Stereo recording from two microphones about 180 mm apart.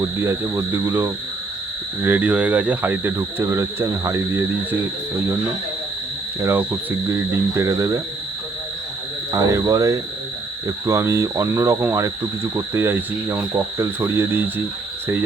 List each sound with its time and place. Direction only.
0.0 s speech: 15° right (ahead or behind)
6.4 s speech: 15° right (ahead or behind)
9.3 s speech: 20° right (ahead or behind)